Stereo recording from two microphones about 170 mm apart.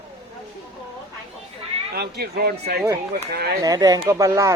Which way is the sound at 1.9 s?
70° right (ahead or behind).